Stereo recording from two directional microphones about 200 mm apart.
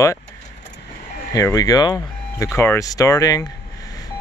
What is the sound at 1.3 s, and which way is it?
Speech, 15° left (ahead or behind).